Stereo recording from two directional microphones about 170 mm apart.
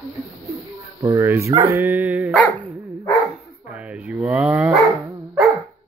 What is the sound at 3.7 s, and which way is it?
Speech, 5° right (ahead or behind).